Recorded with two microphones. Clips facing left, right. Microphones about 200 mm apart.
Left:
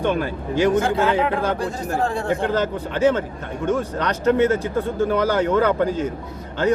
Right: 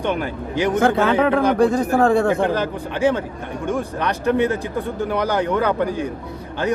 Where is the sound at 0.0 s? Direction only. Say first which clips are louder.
Left 1 dB; 15° right (ahead or behind).